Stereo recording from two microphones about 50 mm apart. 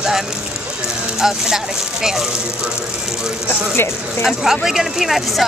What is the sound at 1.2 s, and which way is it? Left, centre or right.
A woman's voice, centre.